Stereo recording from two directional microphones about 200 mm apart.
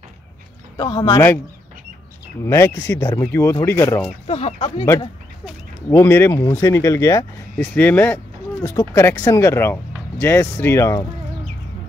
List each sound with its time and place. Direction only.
0.7 s speech: 25° left (ahead or behind)
2.4 s speech: 10° left (ahead or behind)
4.3 s speech: 30° left (ahead or behind)
5.9 s speech: 10° left (ahead or behind)